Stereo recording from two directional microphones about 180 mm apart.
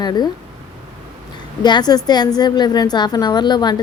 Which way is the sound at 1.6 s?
25° left (ahead or behind).